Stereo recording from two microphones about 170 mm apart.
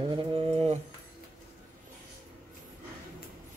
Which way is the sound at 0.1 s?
30° right (ahead or behind).